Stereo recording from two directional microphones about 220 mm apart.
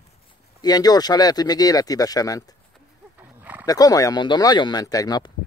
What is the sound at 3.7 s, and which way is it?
Speech, 15° left (ahead or behind).